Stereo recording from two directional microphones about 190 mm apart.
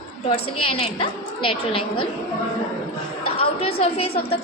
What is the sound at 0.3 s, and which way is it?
A woman's voice, 30° left (ahead or behind).